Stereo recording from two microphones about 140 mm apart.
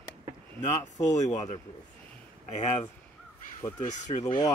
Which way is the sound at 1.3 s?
25° left (ahead or behind).